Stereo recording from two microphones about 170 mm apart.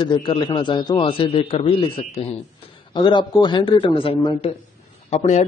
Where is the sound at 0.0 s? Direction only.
30° left (ahead or behind).